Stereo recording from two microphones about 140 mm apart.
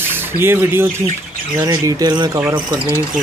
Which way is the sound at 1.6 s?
25° right (ahead or behind).